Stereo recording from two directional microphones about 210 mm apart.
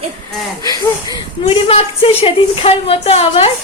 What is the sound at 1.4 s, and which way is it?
A woman's voice, 30° left (ahead or behind).